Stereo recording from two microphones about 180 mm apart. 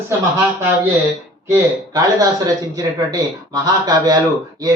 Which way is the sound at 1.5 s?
20° right (ahead or behind).